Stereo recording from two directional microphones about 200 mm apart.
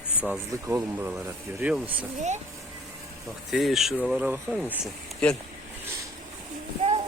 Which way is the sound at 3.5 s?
Centre (ahead or behind).